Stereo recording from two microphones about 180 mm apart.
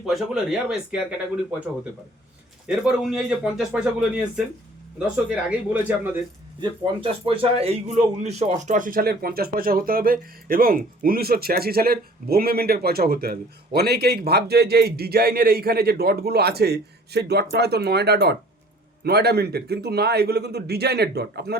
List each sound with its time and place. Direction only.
0.0 s a man's voice: centre (ahead or behind)
6.6 s speech: 30° right (ahead or behind); by 21.6 s 65° right (ahead or behind)